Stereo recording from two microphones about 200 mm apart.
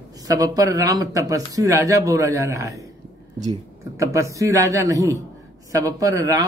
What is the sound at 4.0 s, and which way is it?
Speech, 15° right (ahead or behind).